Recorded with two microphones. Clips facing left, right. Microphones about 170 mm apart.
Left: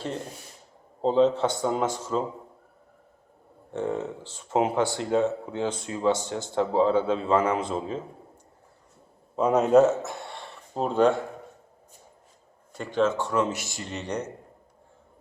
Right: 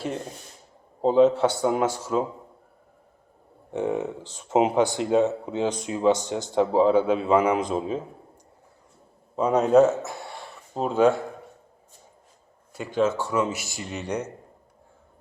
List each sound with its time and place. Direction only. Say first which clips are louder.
1.0 s speech: right 3 dB; 10° right (ahead or behind)
3.7 s speech: right 3 dB; 15° right (ahead or behind)
9.3 s speech: right 1 dB; centre (ahead or behind)
12.7 s speech: right 1 dB; 10° right (ahead or behind)